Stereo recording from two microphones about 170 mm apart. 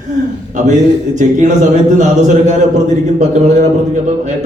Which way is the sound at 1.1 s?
45° right (ahead or behind).